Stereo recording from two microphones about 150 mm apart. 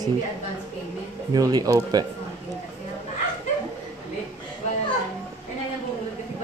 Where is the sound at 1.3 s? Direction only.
25° right (ahead or behind).